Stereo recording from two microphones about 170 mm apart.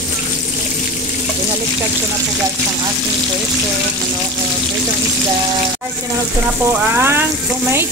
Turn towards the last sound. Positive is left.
turn(degrees=-15)  # may be behind; listen again after turning